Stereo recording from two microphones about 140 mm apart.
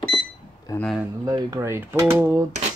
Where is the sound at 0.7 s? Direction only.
25° left (ahead or behind).